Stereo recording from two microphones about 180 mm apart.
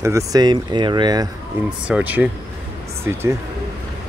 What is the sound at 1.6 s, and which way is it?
Speech, 10° right (ahead or behind).